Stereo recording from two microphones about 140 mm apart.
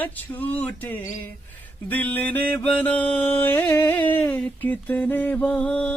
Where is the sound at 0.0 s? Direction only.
10° left (ahead or behind).